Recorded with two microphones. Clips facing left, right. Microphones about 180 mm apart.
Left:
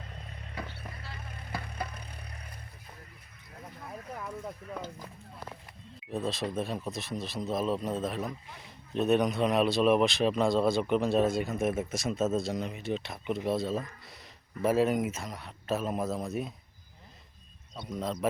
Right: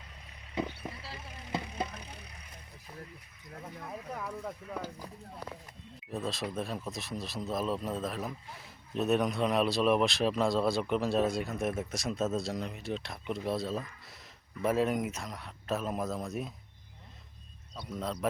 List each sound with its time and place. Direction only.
0.1 s a sound: 50° left (ahead or behind)
0.5 s a sound: 15° right (ahead or behind)
2.0 s vehicle: 55° left (ahead or behind)
4.7 s speech: 10° right (ahead or behind)
6.1 s speech: centre (ahead or behind)
17.9 s speech: centre (ahead or behind)